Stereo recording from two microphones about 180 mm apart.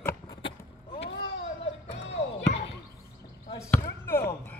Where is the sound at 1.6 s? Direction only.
35° left (ahead or behind).